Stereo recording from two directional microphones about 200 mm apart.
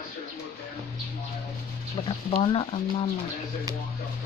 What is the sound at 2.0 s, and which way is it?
Speech, 25° left (ahead or behind).